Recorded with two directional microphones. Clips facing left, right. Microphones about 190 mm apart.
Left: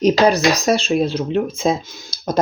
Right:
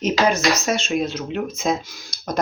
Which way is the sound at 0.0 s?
35° left (ahead or behind).